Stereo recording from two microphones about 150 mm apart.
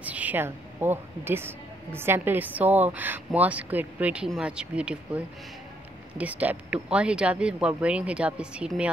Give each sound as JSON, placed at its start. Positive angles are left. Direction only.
{"t": 0.0, "sound": "a woman's voice", "side_deg": -10}